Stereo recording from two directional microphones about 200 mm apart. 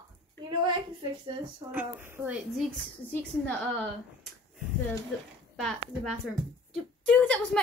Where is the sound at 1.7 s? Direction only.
10° right (ahead or behind).